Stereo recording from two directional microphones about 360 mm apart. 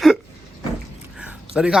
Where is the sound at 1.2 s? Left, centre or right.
Centre.